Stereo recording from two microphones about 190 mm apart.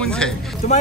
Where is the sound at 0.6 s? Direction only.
35° left (ahead or behind).